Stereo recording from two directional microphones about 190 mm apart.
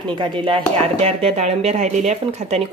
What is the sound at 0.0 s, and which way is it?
Speech, 25° right (ahead or behind).